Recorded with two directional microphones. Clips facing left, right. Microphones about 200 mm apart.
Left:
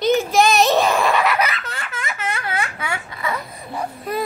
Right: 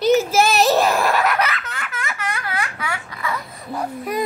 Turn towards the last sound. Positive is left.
turn(degrees=-10)  # may be behind; listen again after turning